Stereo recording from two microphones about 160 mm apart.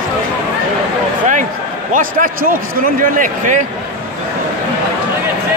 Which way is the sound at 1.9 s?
60° right (ahead or behind).